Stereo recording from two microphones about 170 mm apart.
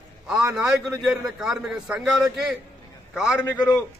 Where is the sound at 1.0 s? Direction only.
5° right (ahead or behind).